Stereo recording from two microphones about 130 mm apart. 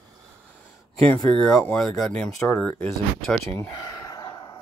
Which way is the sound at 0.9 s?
10° left (ahead or behind).